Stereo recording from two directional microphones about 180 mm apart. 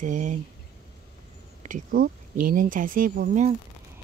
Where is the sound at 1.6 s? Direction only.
50° right (ahead or behind).